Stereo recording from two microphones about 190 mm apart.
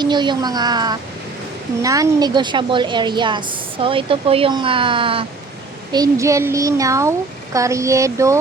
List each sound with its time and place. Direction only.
0.0 s a child's voice: 25° right (ahead or behind)